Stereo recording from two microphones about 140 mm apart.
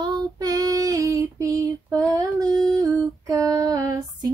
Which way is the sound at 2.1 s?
25° right (ahead or behind).